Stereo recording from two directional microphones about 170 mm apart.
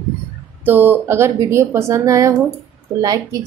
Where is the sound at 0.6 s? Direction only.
10° right (ahead or behind).